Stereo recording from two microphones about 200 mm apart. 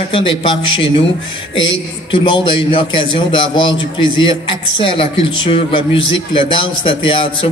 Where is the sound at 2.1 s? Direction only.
25° left (ahead or behind).